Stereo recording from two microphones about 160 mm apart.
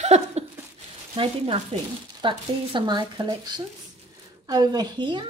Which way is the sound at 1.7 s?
35° right (ahead or behind).